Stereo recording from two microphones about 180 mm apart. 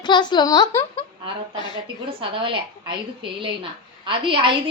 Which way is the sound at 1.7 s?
30° right (ahead or behind).